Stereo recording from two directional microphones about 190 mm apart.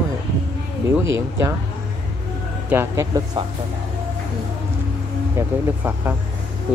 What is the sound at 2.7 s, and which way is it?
Speech, 15° right (ahead or behind).